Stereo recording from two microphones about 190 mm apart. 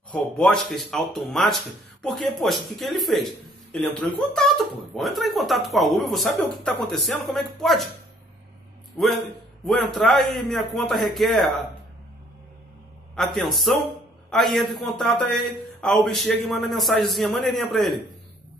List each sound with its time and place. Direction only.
0.1 s speech: 5° left (ahead or behind)
9.7 s speech: 5° left (ahead or behind)
13.4 s speech: centre (ahead or behind)